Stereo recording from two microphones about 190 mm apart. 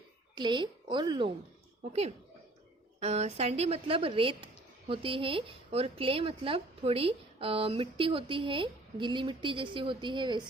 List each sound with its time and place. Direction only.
0.3 s a woman's voice: 25° right (ahead or behind)
1.9 s a woman's voice: 35° right (ahead or behind)